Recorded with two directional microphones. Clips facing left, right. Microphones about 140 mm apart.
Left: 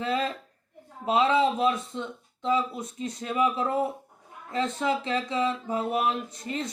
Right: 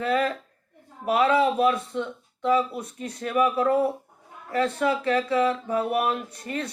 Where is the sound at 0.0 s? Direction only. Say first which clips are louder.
Right 4 dB; 25° left (ahead or behind).